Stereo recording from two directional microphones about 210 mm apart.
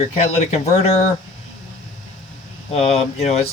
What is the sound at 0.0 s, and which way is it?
Speech, 30° left (ahead or behind).